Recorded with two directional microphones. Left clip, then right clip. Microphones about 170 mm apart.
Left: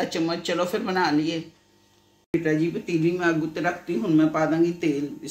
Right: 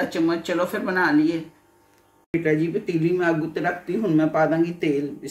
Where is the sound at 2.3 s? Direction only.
45° right (ahead or behind).